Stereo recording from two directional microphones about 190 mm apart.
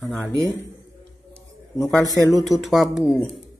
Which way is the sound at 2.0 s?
15° left (ahead or behind).